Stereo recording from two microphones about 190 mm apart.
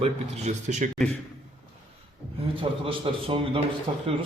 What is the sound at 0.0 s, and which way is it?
Speech, 35° right (ahead or behind).